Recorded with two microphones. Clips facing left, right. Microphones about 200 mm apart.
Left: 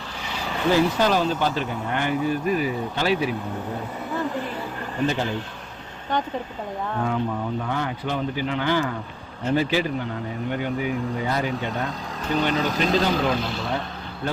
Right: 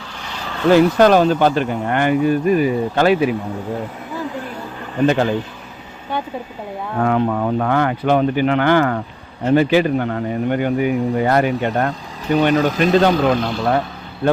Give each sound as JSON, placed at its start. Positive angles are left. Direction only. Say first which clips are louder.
{"t": 0.7, "sound": "speech", "louder": "right 9 dB", "side_deg": -65}
{"t": 4.1, "sound": "a sound", "louder": "left 1 dB", "side_deg": 0}
{"t": 5.0, "sound": "speech", "louder": "right 9 dB", "side_deg": -70}
{"t": 7.0, "sound": "speech", "louder": "right 10 dB", "side_deg": -70}